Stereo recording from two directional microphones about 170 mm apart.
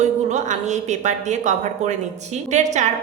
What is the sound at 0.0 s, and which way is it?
A woman's voice, 45° right (ahead or behind).